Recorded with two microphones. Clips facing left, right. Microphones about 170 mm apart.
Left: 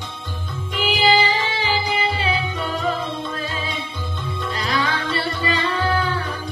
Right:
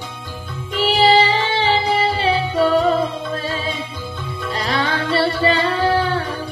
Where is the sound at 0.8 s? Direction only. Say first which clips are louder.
Right 4 dB; 30° right (ahead or behind).